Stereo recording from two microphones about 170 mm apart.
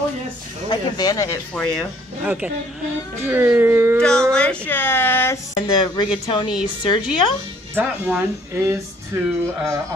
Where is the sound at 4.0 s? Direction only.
5° left (ahead or behind).